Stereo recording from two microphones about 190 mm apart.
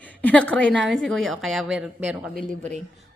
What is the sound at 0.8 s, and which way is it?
A woman's voice, 5° left (ahead or behind).